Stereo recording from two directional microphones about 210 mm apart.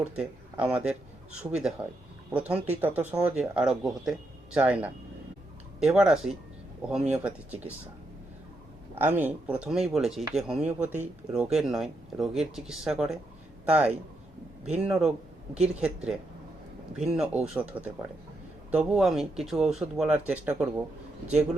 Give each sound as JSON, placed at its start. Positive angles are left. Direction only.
{"t": 0.0, "sound": "speech", "side_deg": -5}
{"t": 9.0, "sound": "speech", "side_deg": -10}